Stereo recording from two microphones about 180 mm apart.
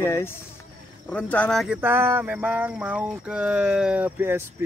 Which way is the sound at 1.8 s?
10° right (ahead or behind).